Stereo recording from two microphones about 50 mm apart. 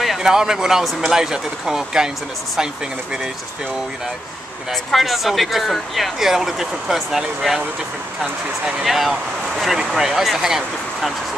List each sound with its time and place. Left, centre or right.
0.0 s speech: centre
4.9 s speech: centre
8.8 s speech: centre